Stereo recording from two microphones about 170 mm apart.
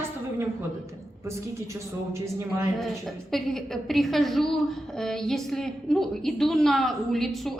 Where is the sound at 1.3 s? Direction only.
15° right (ahead or behind).